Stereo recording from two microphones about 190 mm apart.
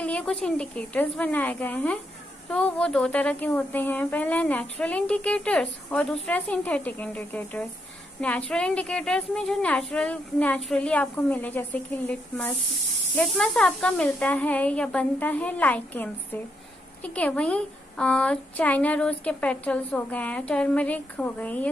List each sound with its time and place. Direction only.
0.0 s a woman's voice: 5° left (ahead or behind)